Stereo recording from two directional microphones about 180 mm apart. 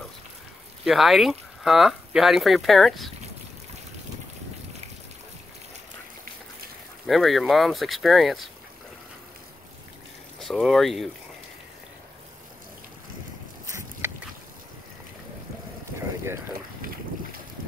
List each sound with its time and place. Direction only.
0.8 s speech: centre (ahead or behind)
7.1 s speech: centre (ahead or behind)
10.4 s speech: centre (ahead or behind)
13.7 s a sound: 15° right (ahead or behind)